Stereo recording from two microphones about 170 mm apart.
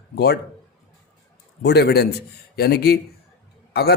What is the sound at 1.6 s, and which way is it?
Speech, 75° left (ahead or behind).